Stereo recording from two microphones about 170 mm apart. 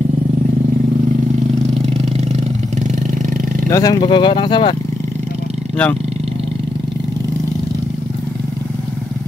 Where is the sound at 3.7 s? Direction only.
25° left (ahead or behind).